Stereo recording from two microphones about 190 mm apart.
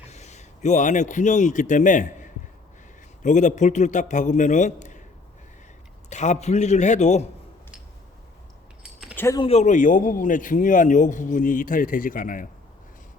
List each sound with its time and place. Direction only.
0.1 s a man's voice: 35° left (ahead or behind)
6.1 s a man's voice: 40° left (ahead or behind)
8.8 s keys jangling: 5° right (ahead or behind)
9.1 s speech: 15° left (ahead or behind)
9.4 s a man's voice: 35° left (ahead or behind)